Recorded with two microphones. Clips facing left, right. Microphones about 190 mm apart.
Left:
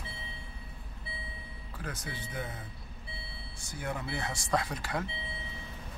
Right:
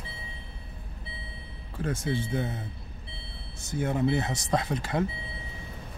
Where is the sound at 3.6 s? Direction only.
25° right (ahead or behind).